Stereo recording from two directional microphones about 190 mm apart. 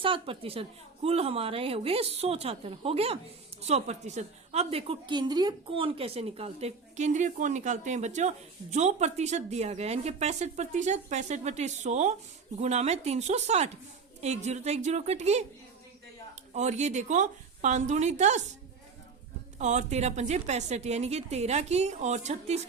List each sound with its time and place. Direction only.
0.0 s a woman's voice: 30° right (ahead or behind)
16.6 s a woman's voice: 35° right (ahead or behind)
19.5 s a woman's voice: 35° right (ahead or behind)